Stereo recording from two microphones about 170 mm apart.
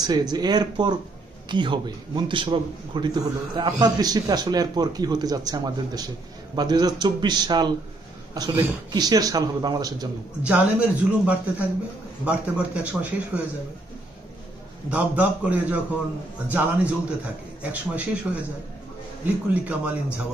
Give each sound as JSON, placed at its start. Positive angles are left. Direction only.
{"t": 0.0, "sound": "speech", "side_deg": -25}
{"t": 10.4, "sound": "a man's voice", "side_deg": -10}
{"t": 14.9, "sound": "a man's voice", "side_deg": -10}